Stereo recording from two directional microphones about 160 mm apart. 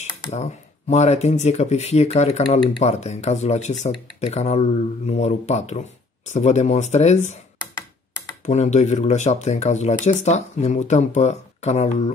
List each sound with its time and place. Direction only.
0.3 s speech: 45° left (ahead or behind)
8.5 s speech: 45° left (ahead or behind)